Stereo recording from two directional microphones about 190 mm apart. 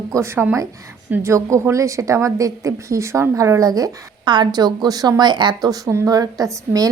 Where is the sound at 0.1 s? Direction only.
15° right (ahead or behind).